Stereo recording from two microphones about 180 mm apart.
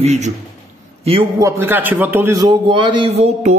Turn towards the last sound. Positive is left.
turn(degrees=-35)  # may be behind; listen again after turning